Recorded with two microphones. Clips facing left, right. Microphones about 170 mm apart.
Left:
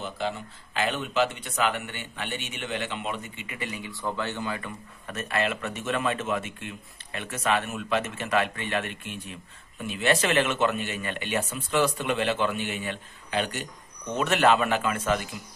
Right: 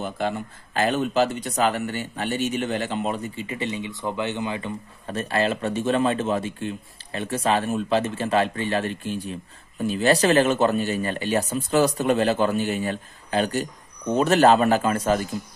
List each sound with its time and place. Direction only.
0.0 s speech: 50° right (ahead or behind)